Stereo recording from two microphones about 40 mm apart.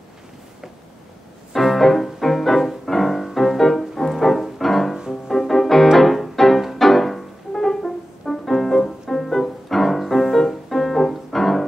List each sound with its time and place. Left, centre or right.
1.5 s music: centre